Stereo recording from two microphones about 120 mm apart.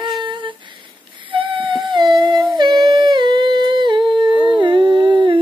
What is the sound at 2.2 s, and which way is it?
Humming, 40° right (ahead or behind).